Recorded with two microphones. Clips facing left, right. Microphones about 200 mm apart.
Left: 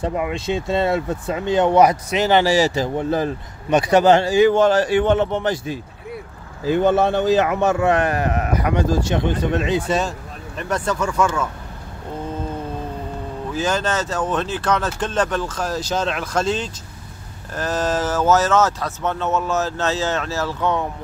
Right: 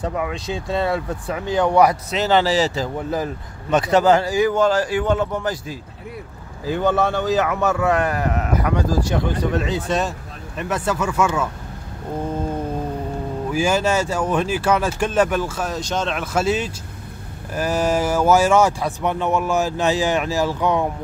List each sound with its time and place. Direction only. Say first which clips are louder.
0.0 s speech: left 2 dB; 20° left (ahead or behind)
4.1 s speech: left 3 dB; 25° left (ahead or behind)
6.8 s speech: left 2 dB; 20° left (ahead or behind)
9.8 s speech: left 1 dB; centre (ahead or behind)
13.5 s speech: right 3 dB; 10° right (ahead or behind)